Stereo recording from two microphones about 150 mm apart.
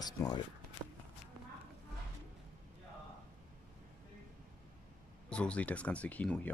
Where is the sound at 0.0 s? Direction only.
25° left (ahead or behind).